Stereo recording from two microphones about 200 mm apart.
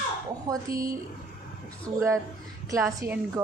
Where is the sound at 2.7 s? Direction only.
15° right (ahead or behind).